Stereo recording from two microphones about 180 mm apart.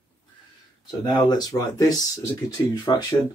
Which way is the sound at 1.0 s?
25° left (ahead or behind).